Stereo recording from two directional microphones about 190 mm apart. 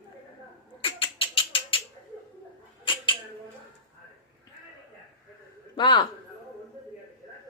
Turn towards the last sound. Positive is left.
turn(degrees=25)  # may be behind; listen again after turning